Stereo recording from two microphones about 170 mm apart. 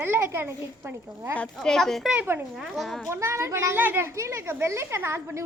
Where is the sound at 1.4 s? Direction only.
5° left (ahead or behind).